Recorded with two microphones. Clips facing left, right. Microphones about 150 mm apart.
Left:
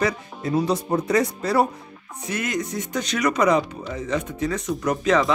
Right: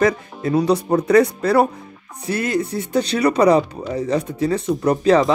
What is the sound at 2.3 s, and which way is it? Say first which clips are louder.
Speech: right 6 dB; 30° right (ahead or behind).